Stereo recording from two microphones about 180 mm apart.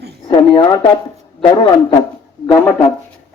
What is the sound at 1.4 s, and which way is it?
Speech, 25° left (ahead or behind).